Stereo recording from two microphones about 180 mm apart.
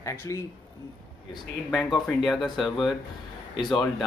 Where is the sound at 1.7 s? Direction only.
Centre (ahead or behind).